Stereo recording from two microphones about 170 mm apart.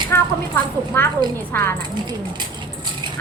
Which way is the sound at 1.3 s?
10° left (ahead or behind).